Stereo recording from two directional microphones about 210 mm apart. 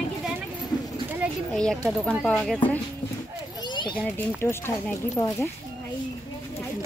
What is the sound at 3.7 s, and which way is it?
Children playing, 20° left (ahead or behind).